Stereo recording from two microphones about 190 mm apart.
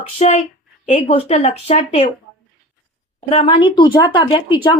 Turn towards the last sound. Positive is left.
turn(degrees=25)  # may be behind; listen again after turning